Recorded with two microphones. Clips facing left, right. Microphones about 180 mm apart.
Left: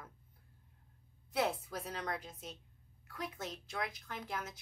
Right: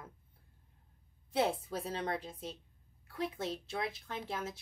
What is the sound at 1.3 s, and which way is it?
Speech, 30° right (ahead or behind).